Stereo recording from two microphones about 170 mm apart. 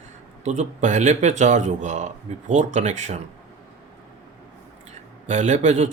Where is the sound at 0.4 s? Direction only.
45° right (ahead or behind).